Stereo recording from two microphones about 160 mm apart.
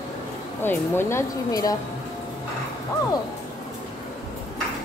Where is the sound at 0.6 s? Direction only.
15° left (ahead or behind).